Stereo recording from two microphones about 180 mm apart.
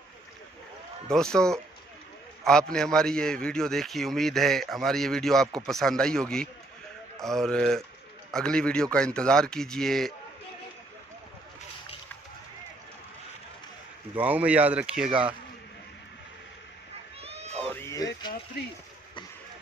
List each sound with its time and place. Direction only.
1.0 s a man's voice: 5° left (ahead or behind)
14.1 s speech: 10° right (ahead or behind)
17.2 s cat: 35° right (ahead or behind)
17.6 s music: 15° left (ahead or behind)